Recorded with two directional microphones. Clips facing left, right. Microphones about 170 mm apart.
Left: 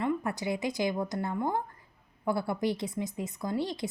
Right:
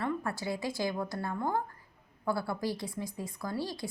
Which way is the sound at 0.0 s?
20° left (ahead or behind).